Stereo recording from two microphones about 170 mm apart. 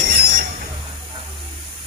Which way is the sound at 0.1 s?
60° right (ahead or behind).